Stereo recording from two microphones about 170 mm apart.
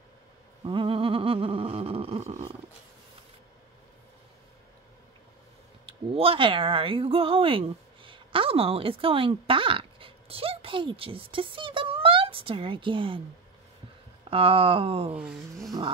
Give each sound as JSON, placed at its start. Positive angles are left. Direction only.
{"t": 0.7, "sound": "a sound", "side_deg": -30}
{"t": 5.9, "sound": "speech", "side_deg": -35}
{"t": 14.3, "sound": "speech", "side_deg": -35}